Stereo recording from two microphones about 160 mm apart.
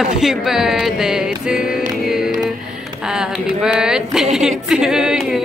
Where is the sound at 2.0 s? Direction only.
5° right (ahead or behind).